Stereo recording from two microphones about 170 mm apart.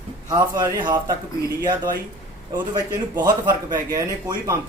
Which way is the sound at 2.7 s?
15° right (ahead or behind).